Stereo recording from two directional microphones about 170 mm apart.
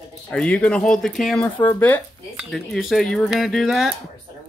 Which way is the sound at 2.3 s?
Centre (ahead or behind).